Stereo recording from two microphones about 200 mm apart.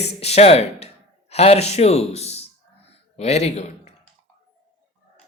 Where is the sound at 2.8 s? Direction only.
30° left (ahead or behind).